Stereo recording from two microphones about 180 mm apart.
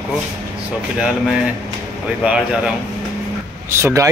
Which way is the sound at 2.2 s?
5° right (ahead or behind).